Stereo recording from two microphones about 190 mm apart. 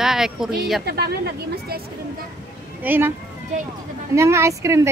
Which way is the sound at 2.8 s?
10° right (ahead or behind).